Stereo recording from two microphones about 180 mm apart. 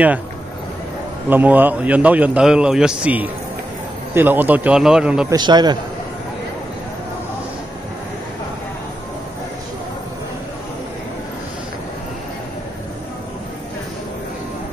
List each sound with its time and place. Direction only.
1.3 s a man's voice: 10° right (ahead or behind)
5.3 s a man's voice: 25° right (ahead or behind)